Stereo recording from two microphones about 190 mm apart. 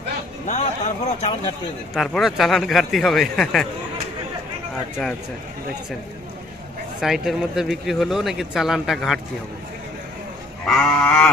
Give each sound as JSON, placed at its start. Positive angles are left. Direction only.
{"t": 0.5, "sound": "speech", "side_deg": 35}
{"t": 2.0, "sound": "speech", "side_deg": 0}
{"t": 7.0, "sound": "speech", "side_deg": 0}
{"t": 10.6, "sound": "speech", "side_deg": 5}